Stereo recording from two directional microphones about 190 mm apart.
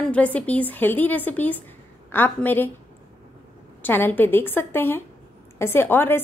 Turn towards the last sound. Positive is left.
turn(degrees=10)  # may be behind; listen again after turning